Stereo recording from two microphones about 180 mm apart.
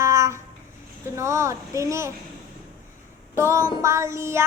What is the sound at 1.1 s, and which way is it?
Child singing, 15° right (ahead or behind).